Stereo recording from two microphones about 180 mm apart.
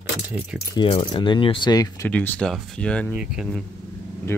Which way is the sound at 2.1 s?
10° left (ahead or behind).